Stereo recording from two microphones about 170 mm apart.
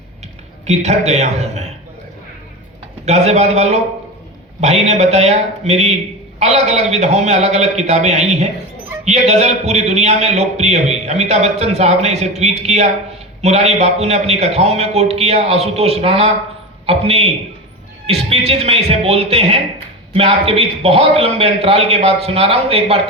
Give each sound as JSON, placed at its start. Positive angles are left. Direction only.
{"t": 0.6, "sound": "a man's voice", "side_deg": -40}
{"t": 3.1, "sound": "a man's voice", "side_deg": -40}